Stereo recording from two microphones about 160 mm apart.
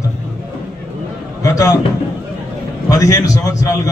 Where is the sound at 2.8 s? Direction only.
20° left (ahead or behind).